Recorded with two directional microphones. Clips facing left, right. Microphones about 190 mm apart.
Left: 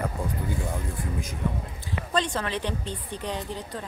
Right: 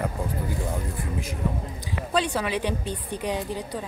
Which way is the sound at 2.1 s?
10° right (ahead or behind).